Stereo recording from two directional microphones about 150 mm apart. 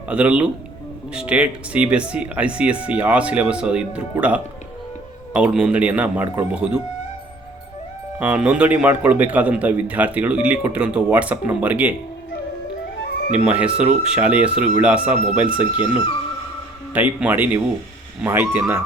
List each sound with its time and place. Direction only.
0.1 s a man's voice: 10° right (ahead or behind)
8.2 s a man's voice: 10° right (ahead or behind)
13.3 s a man's voice: 5° right (ahead or behind)
15.7 s speech: 30° left (ahead or behind)
16.9 s a man's voice: 10° right (ahead or behind)